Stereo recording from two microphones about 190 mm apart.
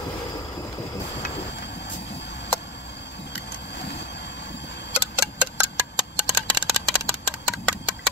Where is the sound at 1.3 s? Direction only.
65° left (ahead or behind).